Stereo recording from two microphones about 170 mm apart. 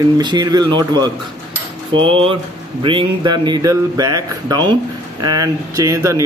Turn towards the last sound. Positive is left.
turn(degrees=-20)  # may be behind; listen again after turning